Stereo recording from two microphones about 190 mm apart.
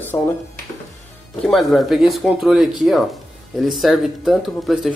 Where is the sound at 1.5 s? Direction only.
Centre (ahead or behind).